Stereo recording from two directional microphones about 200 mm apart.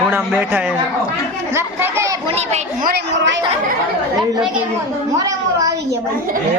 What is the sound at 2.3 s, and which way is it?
A woman's voice, 40° right (ahead or behind).